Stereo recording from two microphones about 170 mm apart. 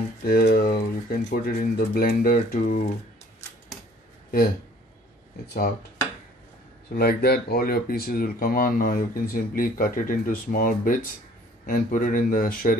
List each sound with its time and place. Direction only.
0.2 s speech: 60° left (ahead or behind)
5.5 s speech: 60° left (ahead or behind)
7.0 s speech: 65° left (ahead or behind)